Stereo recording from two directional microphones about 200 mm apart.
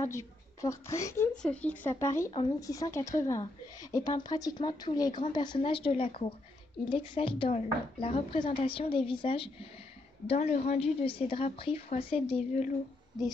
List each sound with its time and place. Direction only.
0.0 s a woman's voice: 15° left (ahead or behind); by 12.7 s 30° left (ahead or behind)